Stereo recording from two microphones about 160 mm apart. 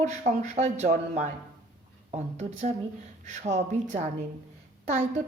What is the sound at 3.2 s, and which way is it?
Speech, 50° right (ahead or behind).